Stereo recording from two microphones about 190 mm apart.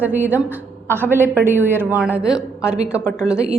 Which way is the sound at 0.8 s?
10° left (ahead or behind).